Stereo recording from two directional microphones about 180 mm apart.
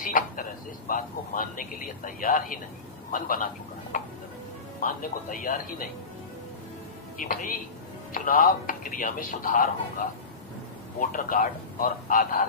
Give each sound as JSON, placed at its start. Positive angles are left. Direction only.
{"t": 0.0, "sound": "speech", "side_deg": 50}
{"t": 3.9, "sound": "tick-tock", "side_deg": 45}
{"t": 4.7, "sound": "speech", "side_deg": 50}
{"t": 7.2, "sound": "speech", "side_deg": 50}
{"t": 11.0, "sound": "speech", "side_deg": 50}